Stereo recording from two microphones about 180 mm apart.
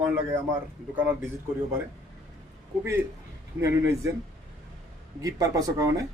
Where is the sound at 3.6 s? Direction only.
15° right (ahead or behind).